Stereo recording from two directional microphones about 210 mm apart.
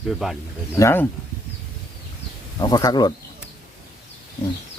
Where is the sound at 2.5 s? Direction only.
15° left (ahead or behind).